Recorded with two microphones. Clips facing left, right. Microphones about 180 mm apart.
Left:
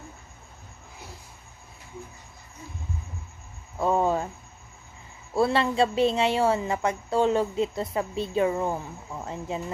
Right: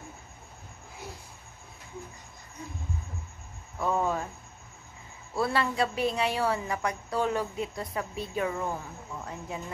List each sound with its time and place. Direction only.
3.8 s a sound: 30° left (ahead or behind)
5.3 s a woman's voice: 25° left (ahead or behind)
9.2 s cricket: 25° left (ahead or behind)